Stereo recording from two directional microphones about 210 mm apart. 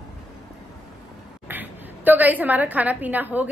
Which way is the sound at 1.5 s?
10° right (ahead or behind).